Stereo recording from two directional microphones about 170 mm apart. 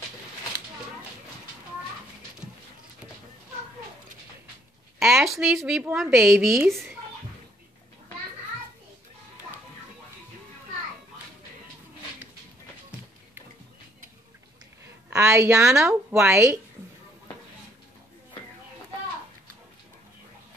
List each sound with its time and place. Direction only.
4.9 s speech: centre (ahead or behind)
15.0 s speech: 15° right (ahead or behind)